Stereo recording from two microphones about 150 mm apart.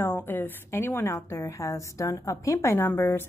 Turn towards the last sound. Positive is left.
turn(degrees=15)  # may be behind; listen again after turning